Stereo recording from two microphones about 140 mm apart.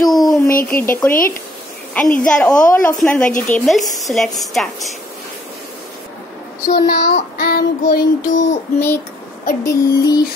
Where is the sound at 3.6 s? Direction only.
Centre (ahead or behind).